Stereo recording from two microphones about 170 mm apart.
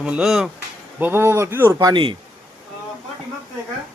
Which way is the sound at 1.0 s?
15° right (ahead or behind).